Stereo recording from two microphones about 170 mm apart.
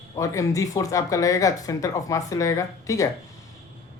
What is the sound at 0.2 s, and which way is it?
Speech, 20° left (ahead or behind).